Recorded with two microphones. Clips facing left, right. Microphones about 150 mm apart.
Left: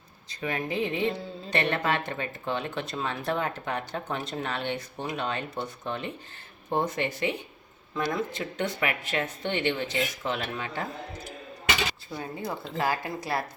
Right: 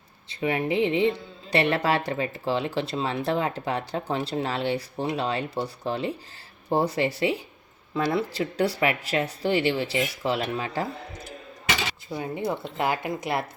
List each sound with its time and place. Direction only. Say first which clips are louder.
0.3 s speech: right 5 dB; 25° right (ahead or behind)
12.1 s speech: right 5 dB; 20° right (ahead or behind)